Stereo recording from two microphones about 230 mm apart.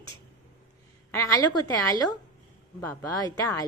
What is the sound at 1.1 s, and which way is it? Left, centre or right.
A woman's voice, centre.